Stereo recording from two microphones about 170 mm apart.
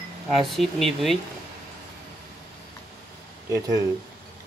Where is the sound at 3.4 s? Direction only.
20° right (ahead or behind).